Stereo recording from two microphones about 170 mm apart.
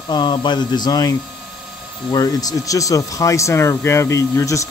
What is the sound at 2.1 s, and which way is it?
Speech, 20° left (ahead or behind).